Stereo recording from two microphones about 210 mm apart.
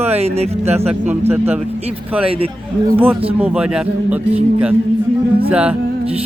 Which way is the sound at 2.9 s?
10° right (ahead or behind).